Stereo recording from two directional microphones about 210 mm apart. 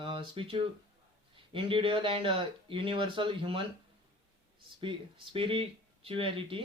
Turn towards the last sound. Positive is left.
turn(degrees=-25)  # may be behind; listen again after turning